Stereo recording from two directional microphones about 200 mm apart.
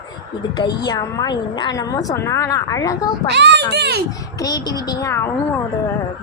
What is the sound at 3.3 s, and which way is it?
Speech, 60° right (ahead or behind).